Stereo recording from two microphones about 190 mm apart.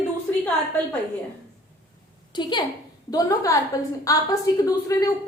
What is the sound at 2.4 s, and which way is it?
A woman's voice, 25° left (ahead or behind).